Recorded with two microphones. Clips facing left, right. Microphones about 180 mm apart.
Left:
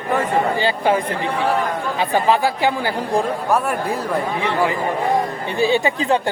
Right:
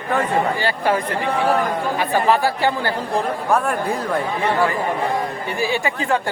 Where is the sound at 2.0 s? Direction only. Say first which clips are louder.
Left 1 dB; 15° left (ahead or behind).